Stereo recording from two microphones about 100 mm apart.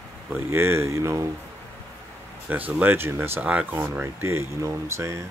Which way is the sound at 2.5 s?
15° right (ahead or behind).